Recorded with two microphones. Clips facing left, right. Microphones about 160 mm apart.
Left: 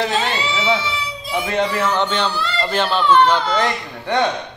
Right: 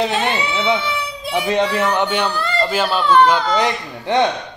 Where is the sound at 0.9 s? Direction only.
65° right (ahead or behind).